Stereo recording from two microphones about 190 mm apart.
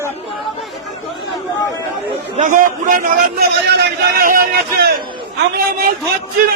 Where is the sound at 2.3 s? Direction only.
45° right (ahead or behind).